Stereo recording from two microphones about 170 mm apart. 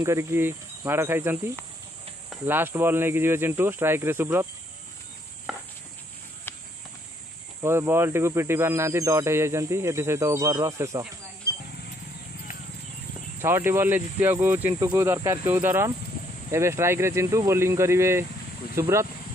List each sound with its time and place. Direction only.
0.0 s speech: 15° right (ahead or behind)
5.5 s a sound: centre (ahead or behind)
7.6 s speech: 15° right (ahead or behind)
13.4 s speech: 15° right (ahead or behind)